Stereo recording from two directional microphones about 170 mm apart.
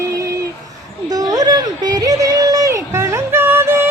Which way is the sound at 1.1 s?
20° right (ahead or behind).